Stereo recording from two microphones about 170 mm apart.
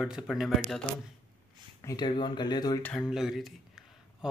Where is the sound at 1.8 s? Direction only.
20° left (ahead or behind).